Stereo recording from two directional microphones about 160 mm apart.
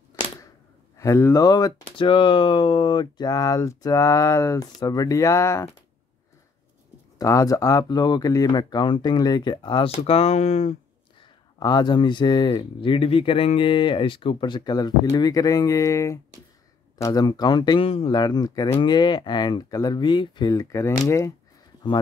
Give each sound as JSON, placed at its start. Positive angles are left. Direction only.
{"t": 0.9, "sound": "speech", "side_deg": 20}
{"t": 7.2, "sound": "speech", "side_deg": 20}
{"t": 11.6, "sound": "speech", "side_deg": 25}